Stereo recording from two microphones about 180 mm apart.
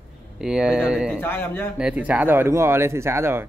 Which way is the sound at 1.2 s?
10° left (ahead or behind).